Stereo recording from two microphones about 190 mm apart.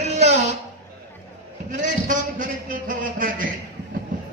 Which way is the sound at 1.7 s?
40° right (ahead or behind).